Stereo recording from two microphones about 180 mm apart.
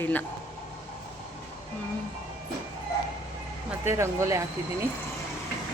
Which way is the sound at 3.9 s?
15° right (ahead or behind).